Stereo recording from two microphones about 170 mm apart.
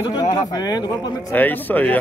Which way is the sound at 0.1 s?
25° left (ahead or behind).